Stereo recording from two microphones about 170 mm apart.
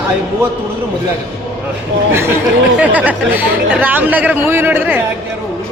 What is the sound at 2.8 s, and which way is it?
Speech, 10° right (ahead or behind).